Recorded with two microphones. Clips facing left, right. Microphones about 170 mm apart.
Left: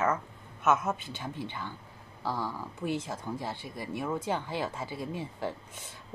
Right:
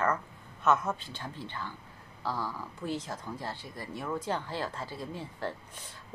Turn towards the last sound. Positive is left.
turn(degrees=15)  # may be behind; listen again after turning